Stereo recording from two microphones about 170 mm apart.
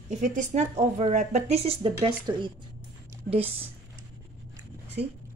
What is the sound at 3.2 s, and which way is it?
Speech, 35° right (ahead or behind).